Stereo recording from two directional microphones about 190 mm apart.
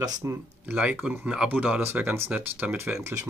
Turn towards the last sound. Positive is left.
turn(degrees=-10)  # may be behind; listen again after turning